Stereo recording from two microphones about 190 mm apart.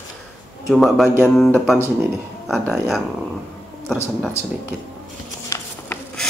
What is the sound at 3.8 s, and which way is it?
Speech, 10° left (ahead or behind).